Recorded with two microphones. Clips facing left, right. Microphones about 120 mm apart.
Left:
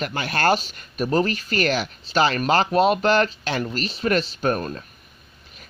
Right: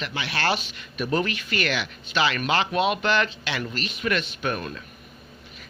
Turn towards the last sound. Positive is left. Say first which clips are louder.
# left 5 dB
turn(degrees=40)  # may be behind; listen again after turning